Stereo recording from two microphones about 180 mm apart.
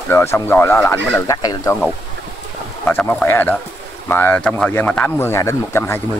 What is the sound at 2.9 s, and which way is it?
Speech, 10° left (ahead or behind).